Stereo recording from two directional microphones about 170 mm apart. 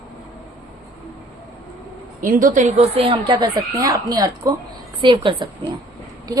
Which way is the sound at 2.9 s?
30° right (ahead or behind).